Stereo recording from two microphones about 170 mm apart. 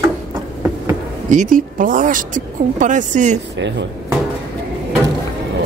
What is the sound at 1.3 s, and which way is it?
Speech, 50° right (ahead or behind).